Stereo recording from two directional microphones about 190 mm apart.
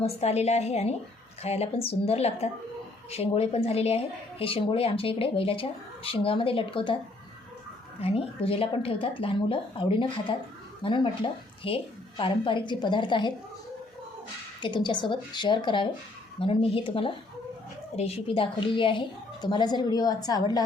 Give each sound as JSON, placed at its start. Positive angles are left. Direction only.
{"t": 0.0, "sound": "a woman's voice", "side_deg": 35}
{"t": 8.0, "sound": "speech", "side_deg": 30}
{"t": 14.6, "sound": "speech", "side_deg": 25}